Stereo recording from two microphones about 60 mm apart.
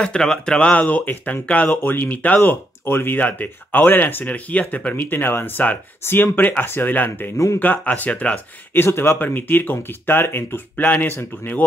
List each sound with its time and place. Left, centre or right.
0.0 s speech: centre
8.7 s speech: left
9.3 s speech: left